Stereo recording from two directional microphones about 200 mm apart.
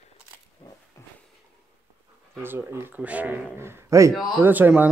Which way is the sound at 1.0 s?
15° left (ahead or behind).